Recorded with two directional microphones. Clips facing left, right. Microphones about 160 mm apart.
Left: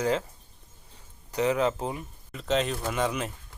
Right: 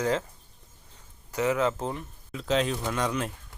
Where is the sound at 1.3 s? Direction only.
20° left (ahead or behind).